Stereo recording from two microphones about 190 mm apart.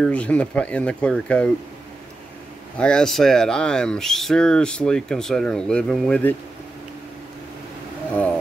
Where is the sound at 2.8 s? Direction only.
5° left (ahead or behind).